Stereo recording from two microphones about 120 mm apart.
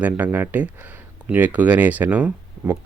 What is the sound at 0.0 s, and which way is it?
Speech, 15° right (ahead or behind).